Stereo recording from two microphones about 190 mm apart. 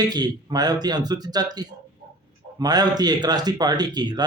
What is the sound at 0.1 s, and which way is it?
Speech, 20° right (ahead or behind).